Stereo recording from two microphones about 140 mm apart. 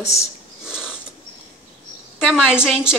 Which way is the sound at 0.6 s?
5° right (ahead or behind).